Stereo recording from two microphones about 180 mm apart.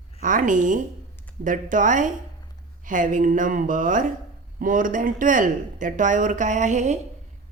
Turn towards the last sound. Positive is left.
turn(degrees=-40)  # may be behind; listen again after turning